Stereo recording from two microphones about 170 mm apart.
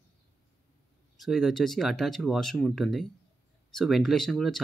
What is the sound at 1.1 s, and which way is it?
Speech, centre (ahead or behind).